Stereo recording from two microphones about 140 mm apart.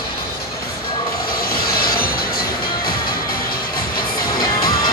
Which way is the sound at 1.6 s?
90° left.